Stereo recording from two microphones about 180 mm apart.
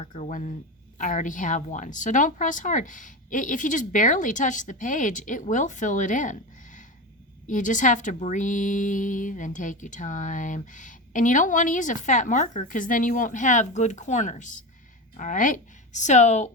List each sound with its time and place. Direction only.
0.0 s a woman's voice: 40° left (ahead or behind)